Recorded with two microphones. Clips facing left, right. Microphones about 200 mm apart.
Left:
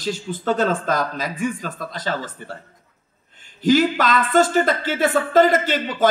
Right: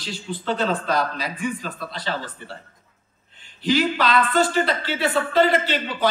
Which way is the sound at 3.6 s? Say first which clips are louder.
Left 4 dB; 45° left (ahead or behind).